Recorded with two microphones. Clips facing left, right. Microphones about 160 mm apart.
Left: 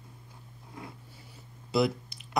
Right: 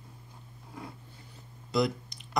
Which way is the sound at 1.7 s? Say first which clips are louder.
Left 1 dB; 5° left (ahead or behind).